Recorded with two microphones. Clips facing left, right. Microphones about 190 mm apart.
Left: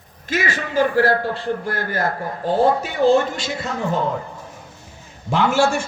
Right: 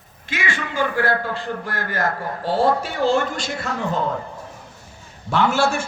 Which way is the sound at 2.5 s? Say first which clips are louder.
Left 2 dB; 20° left (ahead or behind).